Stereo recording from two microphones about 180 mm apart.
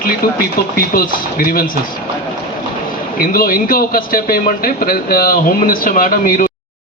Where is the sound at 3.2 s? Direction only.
55° left (ahead or behind).